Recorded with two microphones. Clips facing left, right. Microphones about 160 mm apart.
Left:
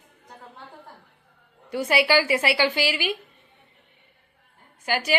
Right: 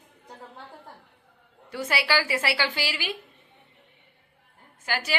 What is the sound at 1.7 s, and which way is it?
Speech, 15° left (ahead or behind).